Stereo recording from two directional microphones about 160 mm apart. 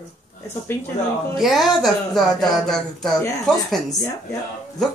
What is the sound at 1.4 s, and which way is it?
A woman's voice, centre (ahead or behind).